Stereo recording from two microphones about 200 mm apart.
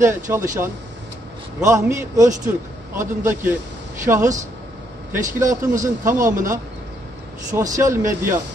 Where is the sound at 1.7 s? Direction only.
15° right (ahead or behind).